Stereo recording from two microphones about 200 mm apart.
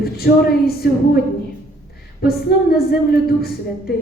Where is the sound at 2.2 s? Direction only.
50° left (ahead or behind).